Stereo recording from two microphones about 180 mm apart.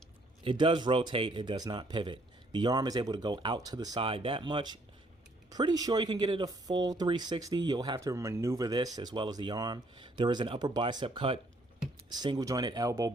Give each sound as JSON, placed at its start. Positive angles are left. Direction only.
{"t": 0.4, "sound": "speech", "side_deg": -25}